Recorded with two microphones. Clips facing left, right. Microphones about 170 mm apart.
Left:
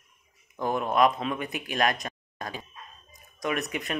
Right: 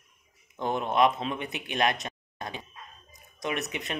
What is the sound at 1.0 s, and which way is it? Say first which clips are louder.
Speech: left 1 dB; 25° right (ahead or behind).